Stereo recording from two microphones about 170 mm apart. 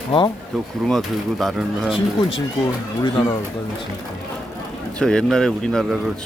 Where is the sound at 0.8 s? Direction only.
Centre (ahead or behind).